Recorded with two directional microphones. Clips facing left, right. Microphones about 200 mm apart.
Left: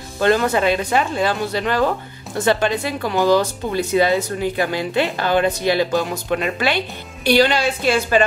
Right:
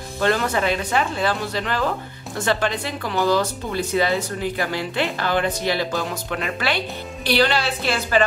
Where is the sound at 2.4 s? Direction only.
15° left (ahead or behind).